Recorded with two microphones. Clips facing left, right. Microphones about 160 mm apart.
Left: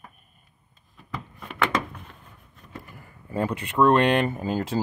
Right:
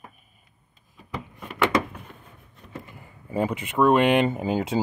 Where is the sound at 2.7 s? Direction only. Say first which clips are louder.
Right 2 dB; 20° right (ahead or behind).